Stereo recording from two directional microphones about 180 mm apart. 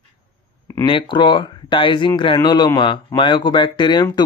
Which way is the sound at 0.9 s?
25° left (ahead or behind).